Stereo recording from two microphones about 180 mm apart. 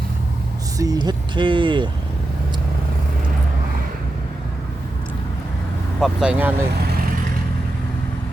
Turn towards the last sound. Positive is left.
turn(degrees=-10)  # may be behind; listen again after turning